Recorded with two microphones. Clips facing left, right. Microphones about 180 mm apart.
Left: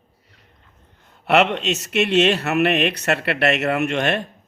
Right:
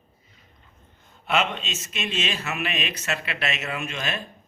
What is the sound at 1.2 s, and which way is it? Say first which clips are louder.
Speech: left 8 dB; 70° left (ahead or behind).